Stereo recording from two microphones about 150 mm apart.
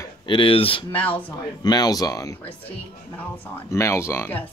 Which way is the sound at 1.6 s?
25° left (ahead or behind).